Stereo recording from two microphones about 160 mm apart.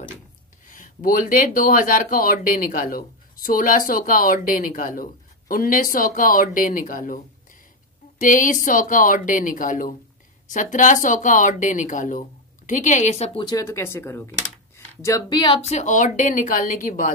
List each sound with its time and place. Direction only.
0.7 s speech: 60° left (ahead or behind)
8.2 s speech: 55° left (ahead or behind)
13.4 s speech: 25° left (ahead or behind)
15.7 s speech: 50° left (ahead or behind)